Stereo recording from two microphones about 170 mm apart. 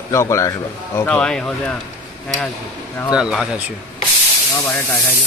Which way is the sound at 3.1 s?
5° right (ahead or behind).